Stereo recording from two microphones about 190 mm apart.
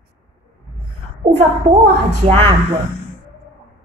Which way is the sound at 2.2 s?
30° right (ahead or behind).